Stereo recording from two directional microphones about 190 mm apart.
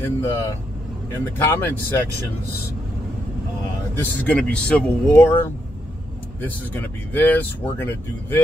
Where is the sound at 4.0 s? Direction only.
5° left (ahead or behind).